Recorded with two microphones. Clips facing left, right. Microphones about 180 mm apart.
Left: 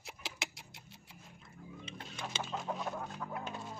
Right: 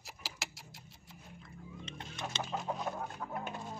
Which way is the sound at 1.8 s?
5° left (ahead or behind).